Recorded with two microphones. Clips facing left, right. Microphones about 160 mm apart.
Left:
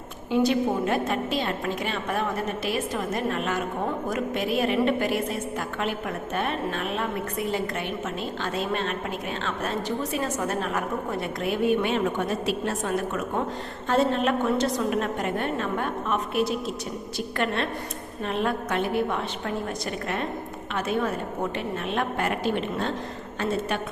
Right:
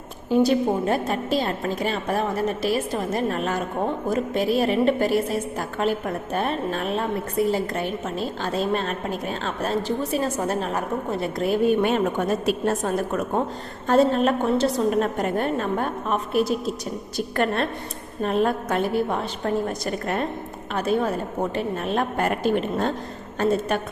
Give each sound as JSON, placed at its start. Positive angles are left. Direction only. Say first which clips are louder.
{"t": 0.3, "sound": "a woman's voice", "louder": "right 3 dB", "side_deg": -35}